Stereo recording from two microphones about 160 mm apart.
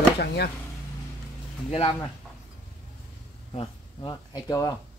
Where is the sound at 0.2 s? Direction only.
90° left.